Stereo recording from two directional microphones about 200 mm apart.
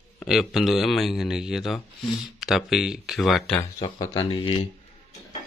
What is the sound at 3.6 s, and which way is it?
Speech, 15° left (ahead or behind).